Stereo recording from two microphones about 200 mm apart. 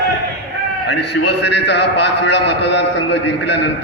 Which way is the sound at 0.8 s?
60° left (ahead or behind).